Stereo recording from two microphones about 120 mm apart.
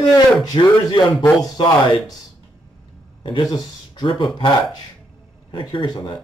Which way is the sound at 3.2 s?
45° left (ahead or behind).